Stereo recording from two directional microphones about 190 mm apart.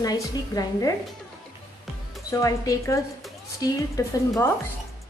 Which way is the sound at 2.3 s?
15° left (ahead or behind).